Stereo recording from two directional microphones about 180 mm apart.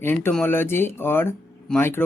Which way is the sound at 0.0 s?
10° left (ahead or behind).